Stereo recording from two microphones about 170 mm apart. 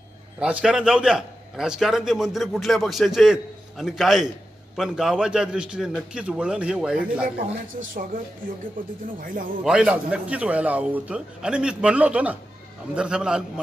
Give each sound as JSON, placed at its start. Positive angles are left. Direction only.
{"t": 0.4, "sound": "a man's voice", "side_deg": -5}
{"t": 7.2, "sound": "speech", "side_deg": -55}
{"t": 9.6, "sound": "a man's voice", "side_deg": -5}